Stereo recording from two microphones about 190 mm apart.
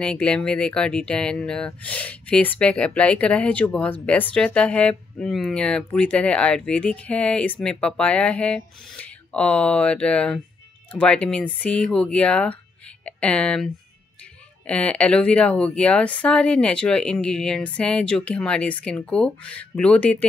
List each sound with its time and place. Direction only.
0.0 s speech: 5° left (ahead or behind)
14.7 s speech: 5° left (ahead or behind)